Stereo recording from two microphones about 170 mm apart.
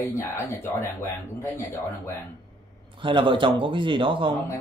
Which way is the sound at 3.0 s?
30° right (ahead or behind).